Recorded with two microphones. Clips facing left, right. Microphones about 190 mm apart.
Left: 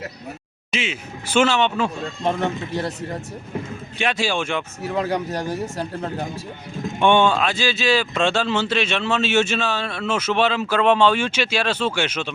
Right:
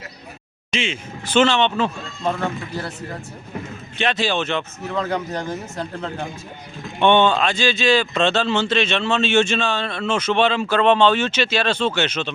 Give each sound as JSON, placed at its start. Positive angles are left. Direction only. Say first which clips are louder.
{"t": 0.7, "sound": "speech", "louder": "right 2 dB", "side_deg": 5}
{"t": 2.2, "sound": "speech", "louder": "left 1 dB", "side_deg": 20}
{"t": 3.9, "sound": "speech", "louder": "right 1 dB", "side_deg": 10}